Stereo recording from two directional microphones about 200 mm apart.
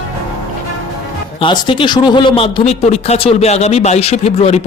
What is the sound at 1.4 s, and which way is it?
Speech, 25° left (ahead or behind).